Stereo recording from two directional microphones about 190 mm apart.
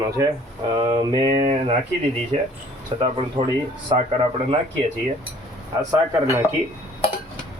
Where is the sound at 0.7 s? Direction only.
20° right (ahead or behind).